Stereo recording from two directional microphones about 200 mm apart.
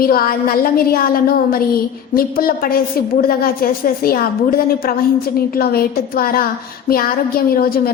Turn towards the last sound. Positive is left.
turn(degrees=45)  # may be behind; listen again after turning